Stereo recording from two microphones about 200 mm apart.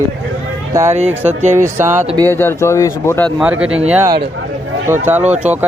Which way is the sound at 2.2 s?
10° left (ahead or behind).